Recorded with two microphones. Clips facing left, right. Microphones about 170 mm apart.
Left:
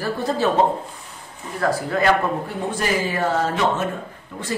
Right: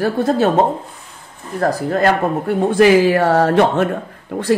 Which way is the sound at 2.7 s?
85° right.